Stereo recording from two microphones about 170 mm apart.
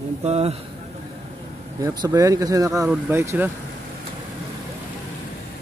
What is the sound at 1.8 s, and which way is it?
Speech, 20° right (ahead or behind).